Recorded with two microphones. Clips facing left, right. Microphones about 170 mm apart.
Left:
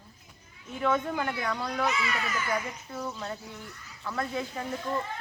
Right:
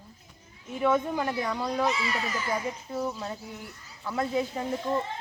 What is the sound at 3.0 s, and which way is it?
Speech, 10° right (ahead or behind).